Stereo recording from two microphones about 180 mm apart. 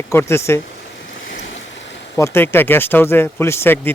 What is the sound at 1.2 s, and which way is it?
Waves, 80° left.